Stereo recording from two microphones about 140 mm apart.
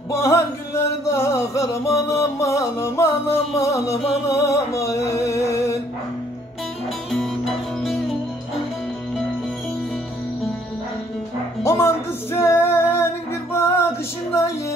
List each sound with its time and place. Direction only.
0.1 s music: 20° left (ahead or behind)
7.1 s music: centre (ahead or behind)
11.6 s music: 20° left (ahead or behind)